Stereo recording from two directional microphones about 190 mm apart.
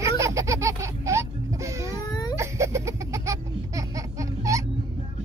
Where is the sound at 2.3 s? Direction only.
15° right (ahead or behind).